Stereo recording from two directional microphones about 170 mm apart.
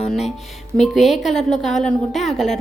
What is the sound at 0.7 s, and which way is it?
A woman's voice, centre (ahead or behind).